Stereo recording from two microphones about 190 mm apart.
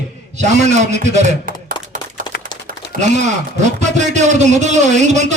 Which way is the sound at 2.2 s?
45° right (ahead or behind).